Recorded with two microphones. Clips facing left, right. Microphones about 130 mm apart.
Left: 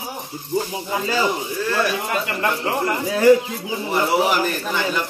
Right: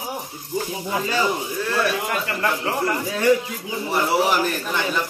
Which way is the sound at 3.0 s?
25° left (ahead or behind).